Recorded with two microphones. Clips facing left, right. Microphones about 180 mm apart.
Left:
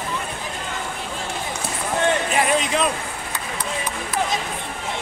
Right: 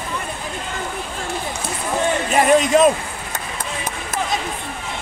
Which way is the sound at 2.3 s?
45° right (ahead or behind).